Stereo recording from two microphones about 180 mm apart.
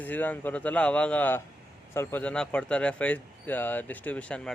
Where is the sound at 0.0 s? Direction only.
10° left (ahead or behind).